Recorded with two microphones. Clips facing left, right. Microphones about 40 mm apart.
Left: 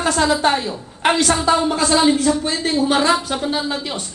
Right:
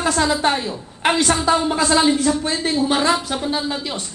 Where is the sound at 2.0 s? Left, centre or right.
Centre.